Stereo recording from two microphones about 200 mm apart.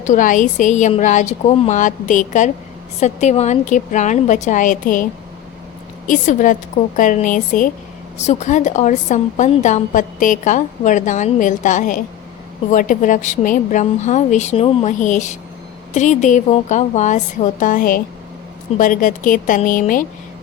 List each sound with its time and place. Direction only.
0.0 s a woman's voice: 40° left (ahead or behind)
6.1 s a woman's voice: 40° left (ahead or behind)